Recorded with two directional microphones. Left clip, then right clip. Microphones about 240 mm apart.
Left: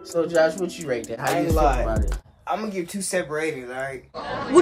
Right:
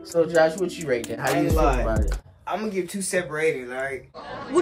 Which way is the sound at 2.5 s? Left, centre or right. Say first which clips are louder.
Even; centre.